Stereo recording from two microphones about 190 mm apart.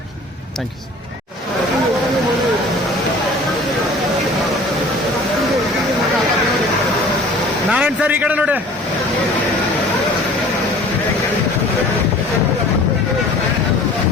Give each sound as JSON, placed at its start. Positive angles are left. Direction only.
{"t": 7.7, "sound": "a man's voice", "side_deg": -5}